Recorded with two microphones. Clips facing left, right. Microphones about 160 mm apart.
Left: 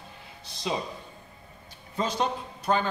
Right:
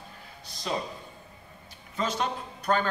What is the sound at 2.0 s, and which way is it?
Speech, 30° left (ahead or behind).